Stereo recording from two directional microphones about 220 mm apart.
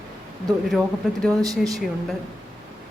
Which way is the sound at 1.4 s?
15° right (ahead or behind).